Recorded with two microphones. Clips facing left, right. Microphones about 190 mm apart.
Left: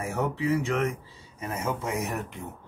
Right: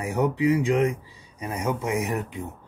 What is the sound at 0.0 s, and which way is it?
Speech, 15° right (ahead or behind).